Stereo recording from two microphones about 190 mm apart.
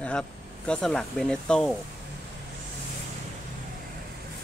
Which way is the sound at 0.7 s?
5° left (ahead or behind).